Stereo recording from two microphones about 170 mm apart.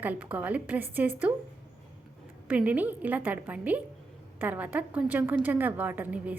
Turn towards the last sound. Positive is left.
turn(degrees=-10)  # may be behind; listen again after turning